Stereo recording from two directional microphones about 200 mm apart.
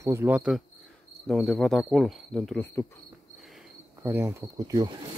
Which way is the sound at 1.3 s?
Centre (ahead or behind).